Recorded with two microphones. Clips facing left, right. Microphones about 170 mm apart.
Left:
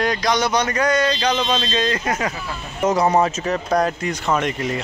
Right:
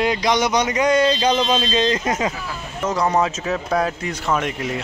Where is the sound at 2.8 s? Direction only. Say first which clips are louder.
Left 3 dB; 15° left (ahead or behind).